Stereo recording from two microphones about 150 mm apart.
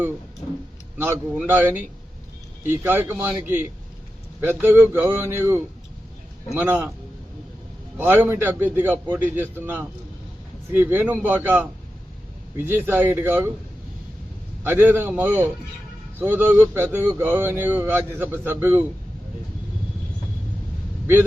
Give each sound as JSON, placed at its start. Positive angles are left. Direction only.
{"t": 0.9, "sound": "speech", "side_deg": -15}
{"t": 4.6, "sound": "speech", "side_deg": -15}
{"t": 6.6, "sound": "speech", "side_deg": -15}
{"t": 7.9, "sound": "speech", "side_deg": -15}
{"t": 14.6, "sound": "speech", "side_deg": -15}